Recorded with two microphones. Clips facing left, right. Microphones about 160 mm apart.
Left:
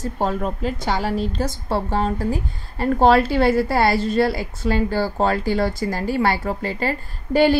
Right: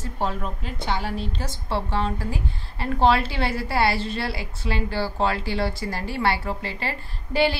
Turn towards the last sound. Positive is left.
turn(degrees=45)  # may be behind; listen again after turning